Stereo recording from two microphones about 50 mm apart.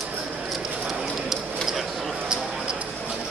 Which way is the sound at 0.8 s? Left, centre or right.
Centre.